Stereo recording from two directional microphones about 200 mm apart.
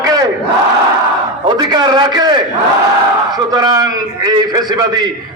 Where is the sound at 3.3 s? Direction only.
20° right (ahead or behind).